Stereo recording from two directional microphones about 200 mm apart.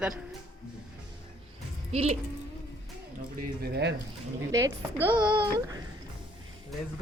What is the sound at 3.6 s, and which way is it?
Speech, 55° right (ahead or behind).